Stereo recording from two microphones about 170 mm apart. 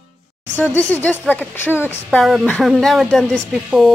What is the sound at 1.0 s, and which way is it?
Speech, 10° left (ahead or behind).